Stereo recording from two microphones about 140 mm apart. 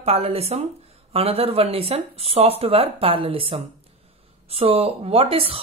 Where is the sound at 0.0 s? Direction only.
45° right (ahead or behind).